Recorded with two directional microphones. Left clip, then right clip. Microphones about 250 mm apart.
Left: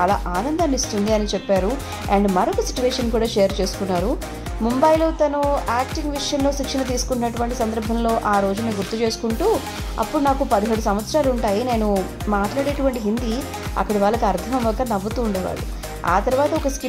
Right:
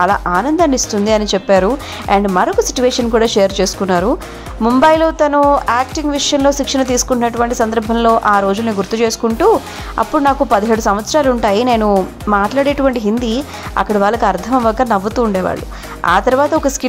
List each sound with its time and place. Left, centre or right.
0.0 s speech: right